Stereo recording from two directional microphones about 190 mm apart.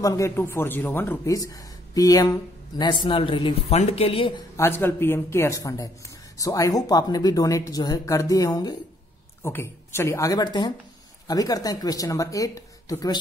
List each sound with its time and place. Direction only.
0.0 s speech: 15° left (ahead or behind)
4.6 s speech: 15° left (ahead or behind)